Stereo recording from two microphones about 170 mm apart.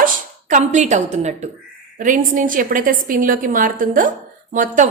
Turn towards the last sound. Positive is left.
turn(degrees=-50)  # may be behind; listen again after turning